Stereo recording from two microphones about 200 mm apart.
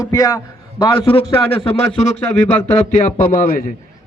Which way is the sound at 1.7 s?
35° left (ahead or behind).